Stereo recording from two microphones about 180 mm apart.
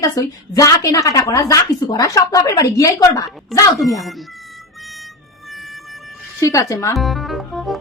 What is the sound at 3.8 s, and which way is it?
Speech, centre (ahead or behind).